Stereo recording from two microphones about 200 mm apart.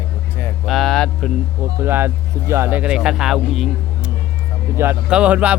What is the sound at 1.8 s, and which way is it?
Speech, 10° right (ahead or behind).